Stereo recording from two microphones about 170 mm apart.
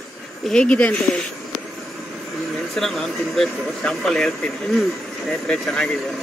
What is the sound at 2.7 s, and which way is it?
Speech, centre (ahead or behind).